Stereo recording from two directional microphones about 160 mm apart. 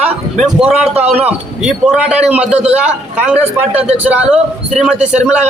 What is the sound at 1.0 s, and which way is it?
Speech, 40° right (ahead or behind).